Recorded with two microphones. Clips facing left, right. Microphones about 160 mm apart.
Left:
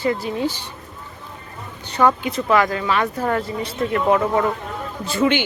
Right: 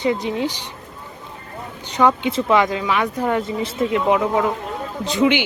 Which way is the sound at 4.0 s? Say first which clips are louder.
Left 1 dB; 10° right (ahead or behind).